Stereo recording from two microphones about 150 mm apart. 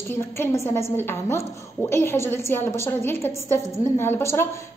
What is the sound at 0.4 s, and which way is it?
A woman's voice, 20° left (ahead or behind).